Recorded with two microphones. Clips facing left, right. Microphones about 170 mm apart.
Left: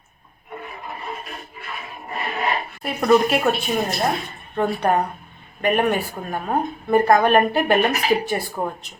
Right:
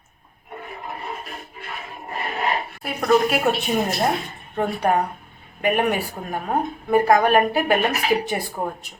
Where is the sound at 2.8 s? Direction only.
Centre (ahead or behind).